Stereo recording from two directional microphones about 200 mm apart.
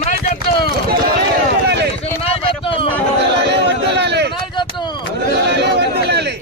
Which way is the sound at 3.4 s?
60° right (ahead or behind).